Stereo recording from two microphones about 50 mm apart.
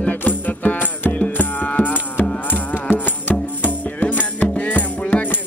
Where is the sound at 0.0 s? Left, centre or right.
Left.